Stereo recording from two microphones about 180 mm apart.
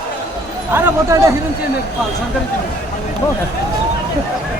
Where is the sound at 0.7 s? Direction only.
15° right (ahead or behind).